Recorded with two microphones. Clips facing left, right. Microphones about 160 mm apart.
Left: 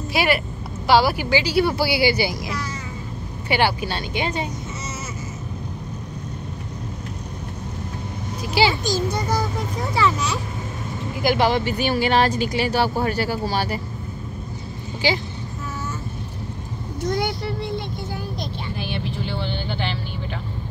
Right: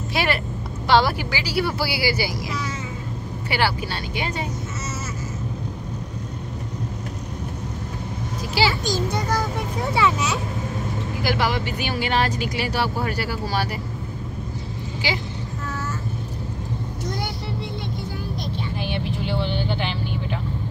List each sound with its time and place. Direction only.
0.1 s a woman's voice: 10° left (ahead or behind)
1.3 s speech: 20° left (ahead or behind)
3.4 s speech: 20° left (ahead or behind)
8.6 s speech: 20° left (ahead or behind)
9.9 s a child's voice: 5° right (ahead or behind)
11.2 s speech: 25° left (ahead or behind)
15.0 s speech: 30° left (ahead or behind)
18.8 s vehicle: 20° right (ahead or behind)